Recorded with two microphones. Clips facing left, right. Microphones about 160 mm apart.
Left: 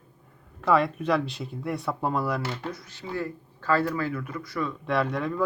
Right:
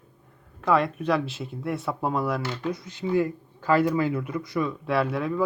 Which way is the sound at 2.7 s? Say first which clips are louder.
Right 8 dB; 20° right (ahead or behind).